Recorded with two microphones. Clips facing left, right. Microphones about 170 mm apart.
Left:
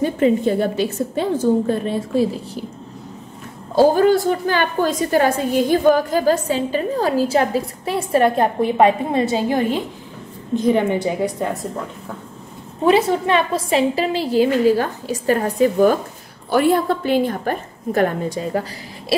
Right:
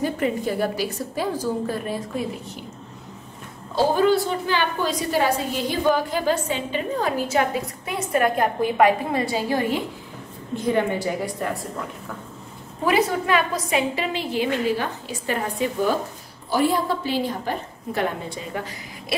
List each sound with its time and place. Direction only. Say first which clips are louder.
0.0 s a woman's voice: left 7 dB; 25° left (ahead or behind)
3.7 s a woman's voice: left 5 dB; 45° left (ahead or behind); by 11.1 s 20° left (ahead or behind)
12.8 s a woman's voice: left 5 dB; 25° left (ahead or behind); by 16.0 s 45° left (ahead or behind)
16.4 s a woman's voice: left 5 dB; 55° left (ahead or behind); by 19.1 s 35° left (ahead or behind)